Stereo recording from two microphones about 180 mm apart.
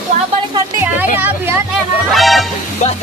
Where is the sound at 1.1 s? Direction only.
10° right (ahead or behind).